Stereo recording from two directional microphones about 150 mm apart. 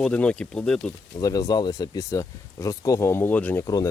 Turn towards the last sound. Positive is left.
turn(degrees=25)  # may be behind; listen again after turning